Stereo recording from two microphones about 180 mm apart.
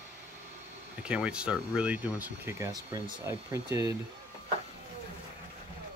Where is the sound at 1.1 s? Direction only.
5° right (ahead or behind).